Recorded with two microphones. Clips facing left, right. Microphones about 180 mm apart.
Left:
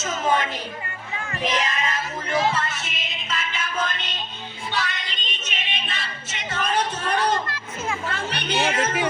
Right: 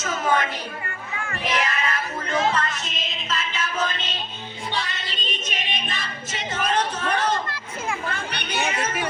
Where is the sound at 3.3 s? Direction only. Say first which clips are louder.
Right 1 dB; centre (ahead or behind).